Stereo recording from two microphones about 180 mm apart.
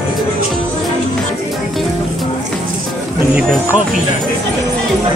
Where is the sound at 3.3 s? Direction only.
5° right (ahead or behind).